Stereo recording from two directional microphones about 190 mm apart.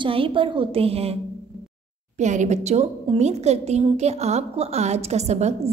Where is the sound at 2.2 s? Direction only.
40° right (ahead or behind).